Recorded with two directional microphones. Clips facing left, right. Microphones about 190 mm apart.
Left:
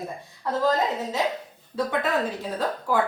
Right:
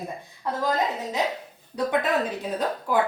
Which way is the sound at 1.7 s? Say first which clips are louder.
Right 1 dB; 20° right (ahead or behind).